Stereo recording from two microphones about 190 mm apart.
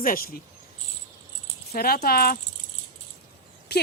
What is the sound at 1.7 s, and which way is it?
Speech, 55° left (ahead or behind).